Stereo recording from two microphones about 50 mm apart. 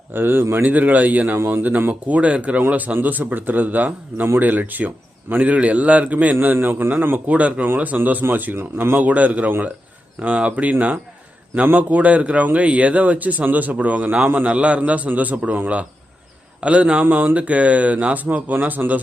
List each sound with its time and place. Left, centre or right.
0.1 s a man's voice: right
0.5 s speech: right
6.4 s a man's voice: right
7.3 s speech: right
8.5 s a man's voice: right
9.0 s speech: right